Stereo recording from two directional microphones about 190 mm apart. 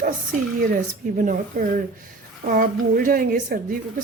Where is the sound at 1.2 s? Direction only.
45° right (ahead or behind).